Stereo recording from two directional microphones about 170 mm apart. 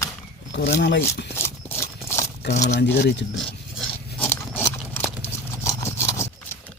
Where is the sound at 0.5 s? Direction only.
80° left.